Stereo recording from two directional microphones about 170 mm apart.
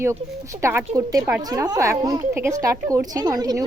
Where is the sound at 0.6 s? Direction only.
15° right (ahead or behind).